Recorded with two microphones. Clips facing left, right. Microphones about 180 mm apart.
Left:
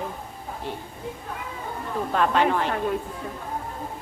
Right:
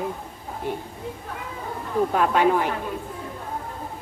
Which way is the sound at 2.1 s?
10° right (ahead or behind).